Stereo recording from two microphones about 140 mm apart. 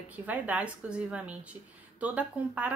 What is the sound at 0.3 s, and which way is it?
A woman's voice, 10° right (ahead or behind).